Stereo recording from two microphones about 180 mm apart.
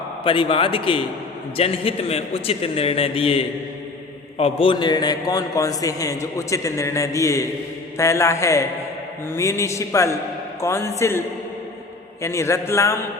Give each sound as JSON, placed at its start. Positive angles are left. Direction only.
{"t": 0.3, "sound": "a man's voice", "side_deg": 30}
{"t": 12.2, "sound": "a man's voice", "side_deg": 15}